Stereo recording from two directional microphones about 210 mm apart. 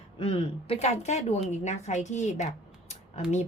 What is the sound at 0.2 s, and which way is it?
A woman's voice, 25° left (ahead or behind).